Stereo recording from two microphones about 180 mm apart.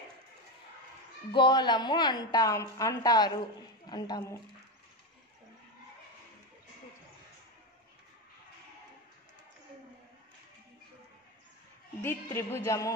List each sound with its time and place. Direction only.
1.3 s a woman's voice: 25° left (ahead or behind)
12.0 s a man's voice: 15° left (ahead or behind)